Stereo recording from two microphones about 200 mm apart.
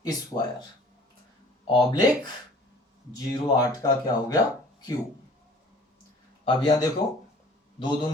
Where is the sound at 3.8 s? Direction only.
20° left (ahead or behind).